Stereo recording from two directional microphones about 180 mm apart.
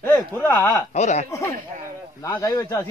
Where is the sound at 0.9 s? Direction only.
40° left (ahead or behind).